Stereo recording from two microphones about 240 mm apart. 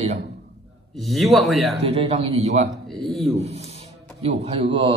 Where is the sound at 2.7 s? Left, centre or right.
Centre.